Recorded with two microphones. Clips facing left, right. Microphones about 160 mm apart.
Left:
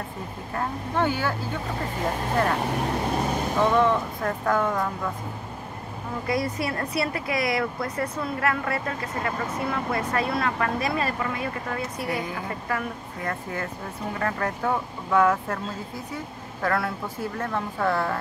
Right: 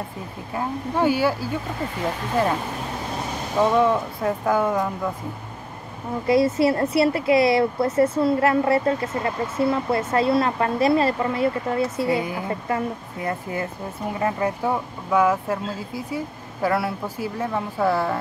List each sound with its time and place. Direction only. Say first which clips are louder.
0.6 s a woman's voice: right 3 dB; 10° right (ahead or behind)
3.7 s a woman's voice: right 2 dB; 10° right (ahead or behind)
6.2 s a woman's voice: right 9 dB; 25° right (ahead or behind); by 15.6 s 5° right (ahead or behind)
16.6 s a woman's voice: right 3 dB; 5° right (ahead or behind)